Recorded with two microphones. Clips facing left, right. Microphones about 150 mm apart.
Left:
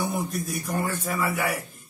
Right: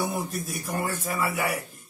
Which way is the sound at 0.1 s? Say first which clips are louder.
Left 2 dB; 5° right (ahead or behind).